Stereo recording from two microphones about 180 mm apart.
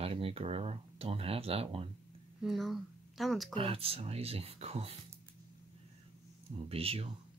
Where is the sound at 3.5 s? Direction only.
30° right (ahead or behind).